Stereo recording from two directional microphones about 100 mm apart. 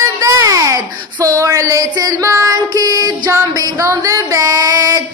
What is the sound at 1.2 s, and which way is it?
Music, 30° right (ahead or behind).